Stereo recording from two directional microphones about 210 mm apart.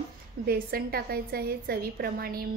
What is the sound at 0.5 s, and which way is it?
A woman's voice, 45° right (ahead or behind).